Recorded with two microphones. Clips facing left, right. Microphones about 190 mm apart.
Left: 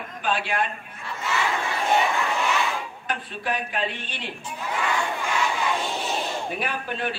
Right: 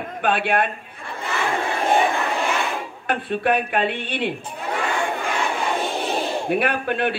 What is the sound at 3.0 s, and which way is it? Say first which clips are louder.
Speech: right 12 dB; 60° right (ahead or behind).